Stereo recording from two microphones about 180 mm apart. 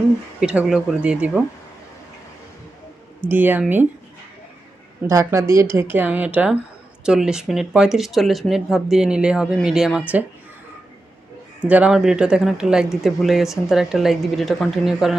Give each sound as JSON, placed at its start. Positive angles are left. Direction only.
{"t": 0.3, "sound": "speech", "side_deg": -5}
{"t": 3.2, "sound": "speech", "side_deg": -10}
{"t": 5.0, "sound": "speech", "side_deg": -15}
{"t": 11.6, "sound": "speech", "side_deg": -5}